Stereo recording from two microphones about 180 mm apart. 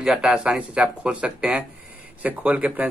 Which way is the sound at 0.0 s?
5° right (ahead or behind).